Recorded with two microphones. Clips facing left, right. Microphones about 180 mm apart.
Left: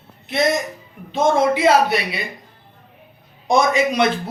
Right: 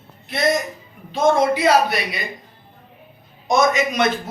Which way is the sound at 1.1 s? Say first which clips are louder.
Even; 25° left (ahead or behind).